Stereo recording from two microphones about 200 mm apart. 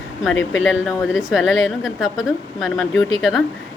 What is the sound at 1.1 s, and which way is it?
A woman's voice, centre (ahead or behind).